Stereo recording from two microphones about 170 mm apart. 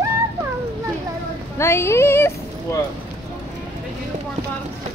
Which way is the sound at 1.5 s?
15° left (ahead or behind).